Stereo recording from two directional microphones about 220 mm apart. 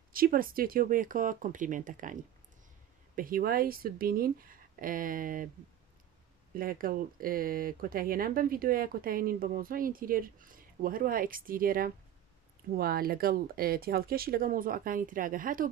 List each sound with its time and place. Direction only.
0.1 s speech: 40° right (ahead or behind)
3.2 s speech: 40° right (ahead or behind)
6.5 s speech: 40° right (ahead or behind)